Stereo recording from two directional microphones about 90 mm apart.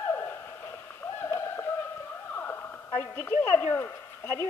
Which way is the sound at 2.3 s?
25° left (ahead or behind).